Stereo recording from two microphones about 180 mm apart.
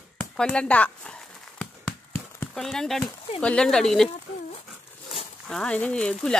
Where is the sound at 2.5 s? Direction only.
Centre (ahead or behind).